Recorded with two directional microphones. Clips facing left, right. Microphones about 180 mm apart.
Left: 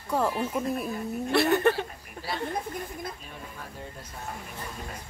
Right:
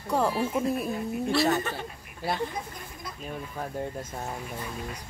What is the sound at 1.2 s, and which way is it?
Speech, 60° left (ahead or behind).